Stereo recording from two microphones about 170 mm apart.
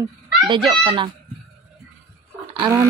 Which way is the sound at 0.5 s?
30° right (ahead or behind).